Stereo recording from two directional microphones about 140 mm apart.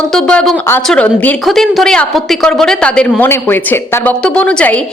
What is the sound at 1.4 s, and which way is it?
A woman's voice, centre (ahead or behind).